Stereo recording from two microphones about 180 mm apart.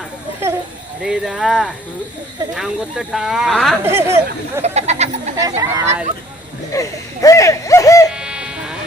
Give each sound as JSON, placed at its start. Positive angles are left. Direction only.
{"t": 1.0, "sound": "speech", "side_deg": -5}
{"t": 3.8, "sound": "speech", "side_deg": -15}
{"t": 4.6, "sound": "speech", "side_deg": -35}
{"t": 5.4, "sound": "speech", "side_deg": -20}
{"t": 6.7, "sound": "speech", "side_deg": 20}
{"t": 8.1, "sound": "music", "side_deg": -5}